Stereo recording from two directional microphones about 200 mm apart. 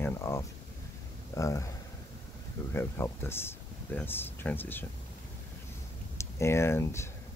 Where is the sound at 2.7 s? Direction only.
10° left (ahead or behind).